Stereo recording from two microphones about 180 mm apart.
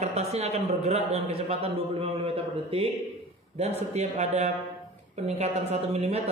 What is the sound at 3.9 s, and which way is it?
A man's voice, 40° right (ahead or behind).